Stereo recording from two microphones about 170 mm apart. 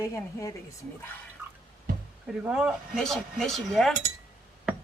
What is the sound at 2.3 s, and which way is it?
Speech, 5° right (ahead or behind).